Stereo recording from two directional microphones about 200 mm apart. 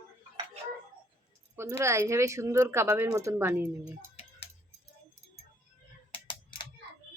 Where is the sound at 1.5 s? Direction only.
10° right (ahead or behind).